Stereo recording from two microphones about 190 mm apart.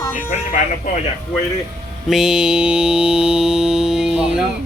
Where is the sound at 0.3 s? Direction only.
45° left (ahead or behind).